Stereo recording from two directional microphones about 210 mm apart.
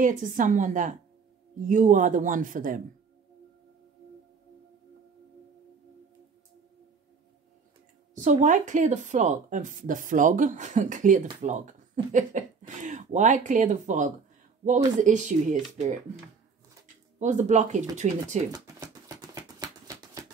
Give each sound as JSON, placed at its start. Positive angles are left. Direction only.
{"t": 0.0, "sound": "speech", "side_deg": -40}
{"t": 8.1, "sound": "speech", "side_deg": -35}
{"t": 18.5, "sound": "a sound", "side_deg": -15}